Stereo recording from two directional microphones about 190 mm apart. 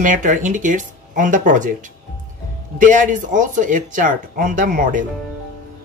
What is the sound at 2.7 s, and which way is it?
Speech, 45° right (ahead or behind).